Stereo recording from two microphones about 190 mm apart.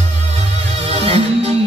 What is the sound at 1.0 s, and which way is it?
Music, 30° right (ahead or behind).